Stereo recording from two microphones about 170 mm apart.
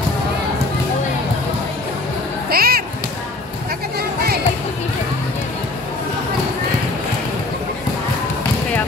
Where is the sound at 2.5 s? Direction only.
60° right (ahead or behind).